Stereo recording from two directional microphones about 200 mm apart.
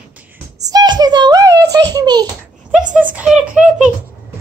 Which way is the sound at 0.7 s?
20° right (ahead or behind).